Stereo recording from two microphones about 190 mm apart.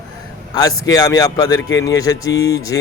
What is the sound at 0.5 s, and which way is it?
Speech, 20° left (ahead or behind).